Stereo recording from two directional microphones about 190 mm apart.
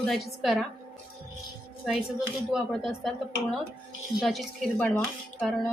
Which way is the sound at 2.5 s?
Centre (ahead or behind).